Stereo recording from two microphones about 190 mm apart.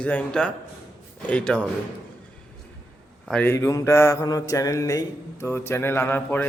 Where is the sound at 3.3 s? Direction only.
10° left (ahead or behind).